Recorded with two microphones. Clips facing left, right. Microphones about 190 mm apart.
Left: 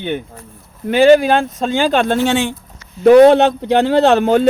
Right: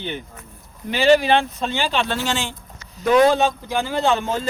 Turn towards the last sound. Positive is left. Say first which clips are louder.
# left 9 dB
turn(degrees=70)  # may be behind; listen again after turning